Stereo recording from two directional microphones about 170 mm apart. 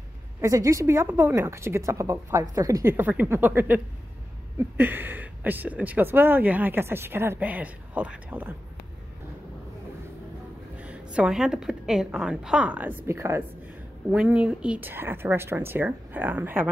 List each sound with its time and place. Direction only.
0.4 s speech: 20° right (ahead or behind)
10.8 s a woman's voice: 5° right (ahead or behind)